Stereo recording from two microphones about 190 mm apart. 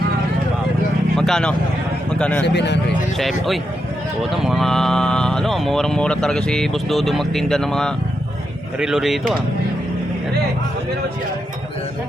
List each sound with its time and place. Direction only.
1.1 s vehicle: 5° left (ahead or behind)
2.1 s a man's voice: 5° left (ahead or behind)
2.4 s speech: 65° left (ahead or behind)
3.2 s speech: centre (ahead or behind)